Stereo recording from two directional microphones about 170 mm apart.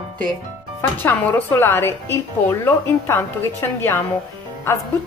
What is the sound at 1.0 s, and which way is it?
A woman's voice, 10° left (ahead or behind).